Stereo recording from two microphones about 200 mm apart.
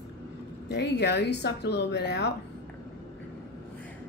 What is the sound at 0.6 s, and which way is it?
A woman's voice, 60° left (ahead or behind).